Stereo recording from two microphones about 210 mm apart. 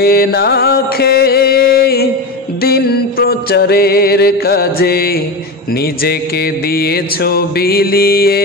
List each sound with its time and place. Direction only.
0.0 s music: 45° left (ahead or behind)
6.7 s music: 45° left (ahead or behind)